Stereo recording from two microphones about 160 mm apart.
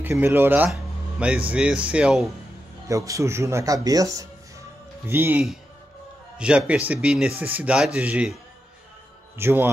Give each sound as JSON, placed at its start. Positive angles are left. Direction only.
{"t": 0.0, "sound": "speech", "side_deg": -15}
{"t": 2.9, "sound": "speech", "side_deg": -20}
{"t": 9.4, "sound": "speech", "side_deg": -15}